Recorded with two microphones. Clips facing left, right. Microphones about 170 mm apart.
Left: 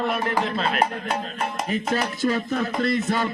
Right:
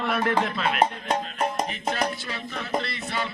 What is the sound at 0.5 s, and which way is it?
Speech, 35° left (ahead or behind).